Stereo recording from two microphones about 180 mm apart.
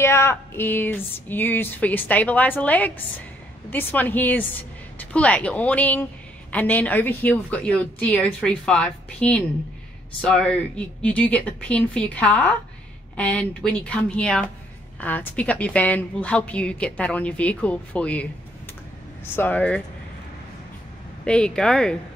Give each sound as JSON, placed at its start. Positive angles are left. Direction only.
{"t": 0.0, "sound": "a woman's voice", "side_deg": 15}
{"t": 19.3, "sound": "a woman's voice", "side_deg": 10}
{"t": 21.2, "sound": "speech", "side_deg": 5}